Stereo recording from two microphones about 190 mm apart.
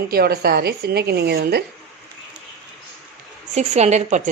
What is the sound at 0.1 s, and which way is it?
A woman's voice, 55° right (ahead or behind).